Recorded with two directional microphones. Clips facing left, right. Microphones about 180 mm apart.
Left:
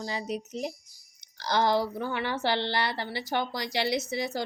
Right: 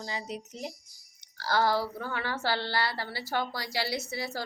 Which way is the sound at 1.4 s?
20° left (ahead or behind).